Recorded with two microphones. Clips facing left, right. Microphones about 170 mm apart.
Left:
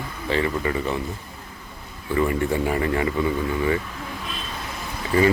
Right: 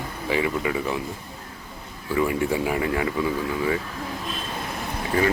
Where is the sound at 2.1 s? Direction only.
5° right (ahead or behind).